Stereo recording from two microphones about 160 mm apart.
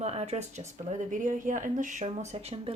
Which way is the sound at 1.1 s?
55° right (ahead or behind).